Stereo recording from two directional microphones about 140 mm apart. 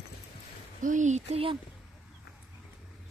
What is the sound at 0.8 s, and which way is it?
Speech, 60° right (ahead or behind).